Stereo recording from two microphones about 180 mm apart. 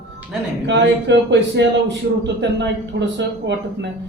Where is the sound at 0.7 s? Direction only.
75° right (ahead or behind).